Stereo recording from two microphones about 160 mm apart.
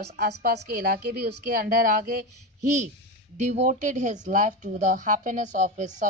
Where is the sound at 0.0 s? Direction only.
80° right; by 2.1 s 60° right (ahead or behind).